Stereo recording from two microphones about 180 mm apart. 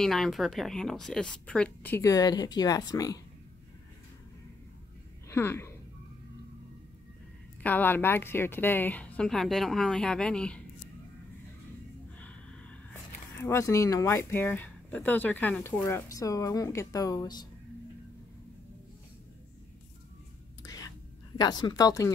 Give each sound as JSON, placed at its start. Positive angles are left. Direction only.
{"t": 0.0, "sound": "speech", "side_deg": 0}
{"t": 5.3, "sound": "speech", "side_deg": 15}
{"t": 7.6, "sound": "speech", "side_deg": 10}
{"t": 13.4, "sound": "speech", "side_deg": 15}
{"t": 20.6, "sound": "whispering", "side_deg": 20}
{"t": 21.4, "sound": "speech", "side_deg": 25}